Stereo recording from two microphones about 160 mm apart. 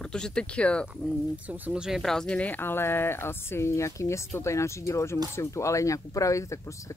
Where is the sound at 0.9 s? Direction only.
10° right (ahead or behind).